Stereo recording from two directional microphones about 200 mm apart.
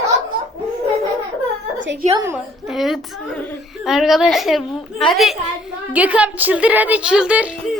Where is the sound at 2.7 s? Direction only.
Centre (ahead or behind).